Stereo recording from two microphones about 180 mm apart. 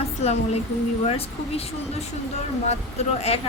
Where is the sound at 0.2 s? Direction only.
35° left (ahead or behind).